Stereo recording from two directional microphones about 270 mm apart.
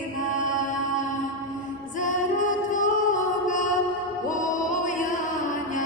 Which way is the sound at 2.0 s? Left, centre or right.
Left.